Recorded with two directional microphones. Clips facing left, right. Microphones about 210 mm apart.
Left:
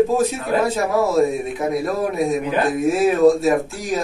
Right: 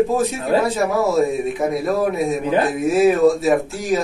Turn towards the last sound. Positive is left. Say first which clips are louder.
# right 2 dB
turn(degrees=0)  # may be behind; listen again after turning